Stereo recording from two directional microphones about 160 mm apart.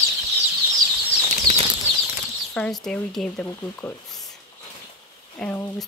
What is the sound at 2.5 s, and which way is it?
Speech, 5° left (ahead or behind).